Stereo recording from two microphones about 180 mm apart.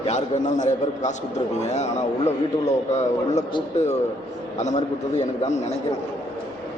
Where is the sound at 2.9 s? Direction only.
40° left (ahead or behind).